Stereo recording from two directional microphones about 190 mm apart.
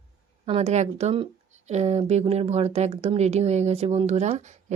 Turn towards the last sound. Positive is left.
turn(degrees=-35)  # may be behind; listen again after turning